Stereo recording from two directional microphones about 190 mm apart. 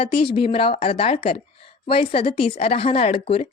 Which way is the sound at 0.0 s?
30° left (ahead or behind).